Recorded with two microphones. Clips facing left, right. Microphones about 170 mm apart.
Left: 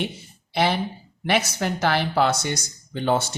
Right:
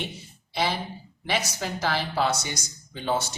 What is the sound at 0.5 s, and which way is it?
Speech, 65° left (ahead or behind).